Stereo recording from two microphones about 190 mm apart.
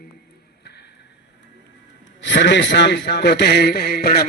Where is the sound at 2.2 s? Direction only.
65° left (ahead or behind).